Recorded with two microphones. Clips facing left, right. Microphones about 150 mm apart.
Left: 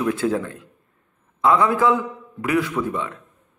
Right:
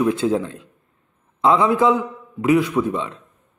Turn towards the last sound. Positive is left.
turn(degrees=-20)  # may be behind; listen again after turning